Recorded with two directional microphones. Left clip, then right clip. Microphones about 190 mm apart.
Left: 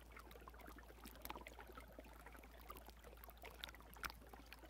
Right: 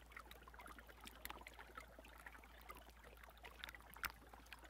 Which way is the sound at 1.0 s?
60° left (ahead or behind).